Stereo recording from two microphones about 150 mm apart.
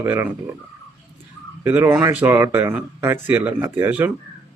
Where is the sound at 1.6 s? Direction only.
15° right (ahead or behind).